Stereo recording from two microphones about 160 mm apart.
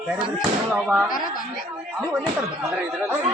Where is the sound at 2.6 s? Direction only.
15° right (ahead or behind).